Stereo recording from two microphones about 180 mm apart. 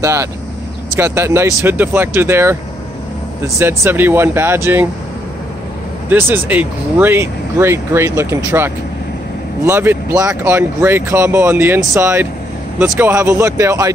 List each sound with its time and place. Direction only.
0.0 s speech: 15° right (ahead or behind)
6.0 s speech: 10° right (ahead or behind)